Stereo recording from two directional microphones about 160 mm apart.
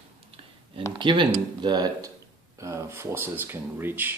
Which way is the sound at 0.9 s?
30° right (ahead or behind).